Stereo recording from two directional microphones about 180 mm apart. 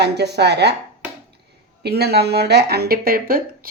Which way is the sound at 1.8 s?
60° right (ahead or behind).